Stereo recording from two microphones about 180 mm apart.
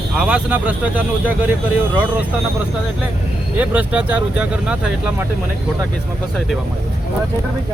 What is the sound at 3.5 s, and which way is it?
Speech, 10° right (ahead or behind).